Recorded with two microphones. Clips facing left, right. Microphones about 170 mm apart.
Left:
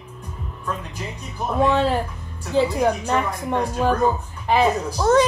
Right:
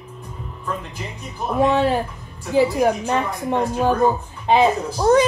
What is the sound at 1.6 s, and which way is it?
A woman's voice, 20° right (ahead or behind).